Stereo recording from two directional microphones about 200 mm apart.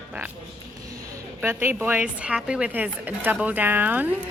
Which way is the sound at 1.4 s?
10° right (ahead or behind).